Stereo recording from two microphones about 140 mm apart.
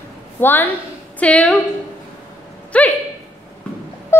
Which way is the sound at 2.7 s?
10° left (ahead or behind).